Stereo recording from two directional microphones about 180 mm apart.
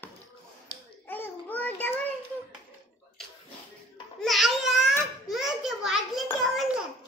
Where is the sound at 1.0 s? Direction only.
10° left (ahead or behind).